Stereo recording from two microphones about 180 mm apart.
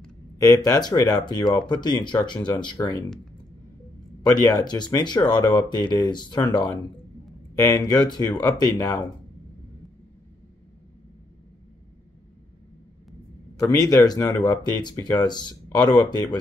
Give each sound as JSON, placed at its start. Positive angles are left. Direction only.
{"t": 0.4, "sound": "speech", "side_deg": 20}
{"t": 4.2, "sound": "speech", "side_deg": 20}
{"t": 13.6, "sound": "speech", "side_deg": 20}